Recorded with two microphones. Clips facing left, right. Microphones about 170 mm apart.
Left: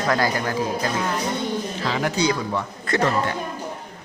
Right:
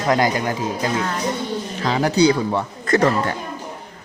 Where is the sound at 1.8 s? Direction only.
35° right (ahead or behind).